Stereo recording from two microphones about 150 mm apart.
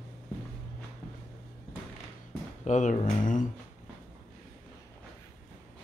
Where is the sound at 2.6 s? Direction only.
55° left (ahead or behind).